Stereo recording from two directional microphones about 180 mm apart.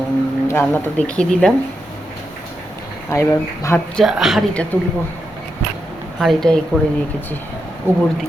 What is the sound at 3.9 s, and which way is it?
Speech, centre (ahead or behind).